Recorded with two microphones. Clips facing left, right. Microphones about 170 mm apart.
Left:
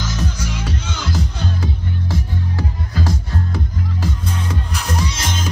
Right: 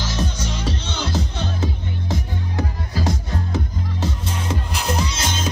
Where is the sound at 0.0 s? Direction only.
30° right (ahead or behind).